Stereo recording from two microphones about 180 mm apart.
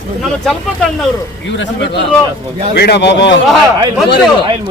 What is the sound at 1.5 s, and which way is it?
Speech, 80° left.